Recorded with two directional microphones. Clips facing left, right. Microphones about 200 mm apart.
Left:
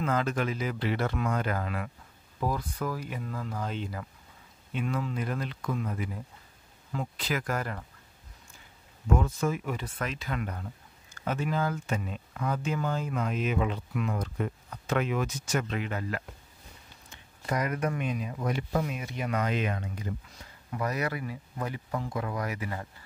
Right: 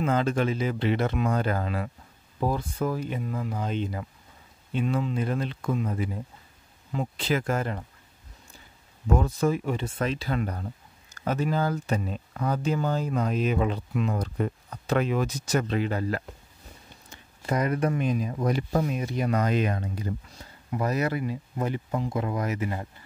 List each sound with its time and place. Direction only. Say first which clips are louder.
0.0 s speech: right 4 dB; 25° right (ahead or behind)
1.3 s speech: right 4 dB; 30° right (ahead or behind)
9.1 s speech: right 4 dB; 35° right (ahead or behind)
17.5 s speech: right 4 dB; 30° right (ahead or behind)